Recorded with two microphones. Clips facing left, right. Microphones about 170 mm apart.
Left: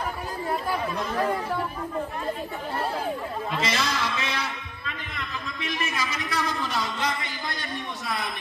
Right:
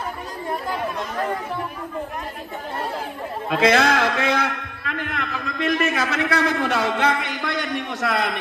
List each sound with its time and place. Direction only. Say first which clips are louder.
3.4 s a man's voice: right 12 dB; 65° right (ahead or behind)